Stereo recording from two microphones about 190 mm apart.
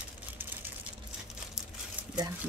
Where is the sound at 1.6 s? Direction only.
5° right (ahead or behind).